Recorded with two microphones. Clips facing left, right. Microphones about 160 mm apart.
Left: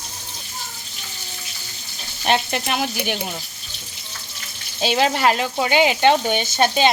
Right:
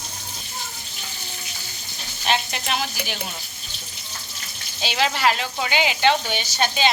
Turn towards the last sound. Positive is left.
turn(degrees=45)  # may be behind; listen again after turning